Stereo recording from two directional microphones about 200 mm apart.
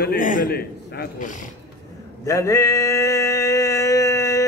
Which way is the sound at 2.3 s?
15° left (ahead or behind).